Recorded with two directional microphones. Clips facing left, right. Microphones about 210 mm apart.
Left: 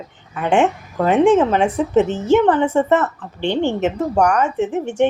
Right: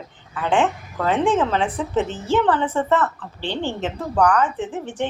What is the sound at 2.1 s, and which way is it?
Speech, 45° left (ahead or behind).